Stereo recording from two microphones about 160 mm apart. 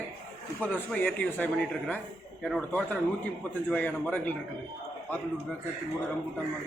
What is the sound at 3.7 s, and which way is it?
Speech, 10° left (ahead or behind).